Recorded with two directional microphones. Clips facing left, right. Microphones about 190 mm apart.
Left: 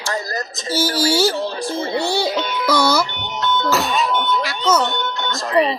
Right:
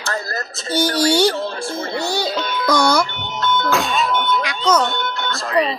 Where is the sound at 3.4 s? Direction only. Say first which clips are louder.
Even; 20° left (ahead or behind).